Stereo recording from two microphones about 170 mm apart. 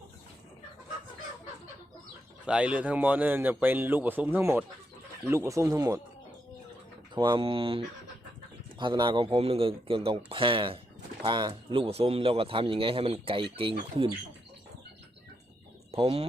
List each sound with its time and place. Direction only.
2.5 s speech: 5° right (ahead or behind)
7.1 s speech: 25° right (ahead or behind)
8.8 s speech: 25° right (ahead or behind)
15.9 s speech: 35° right (ahead or behind)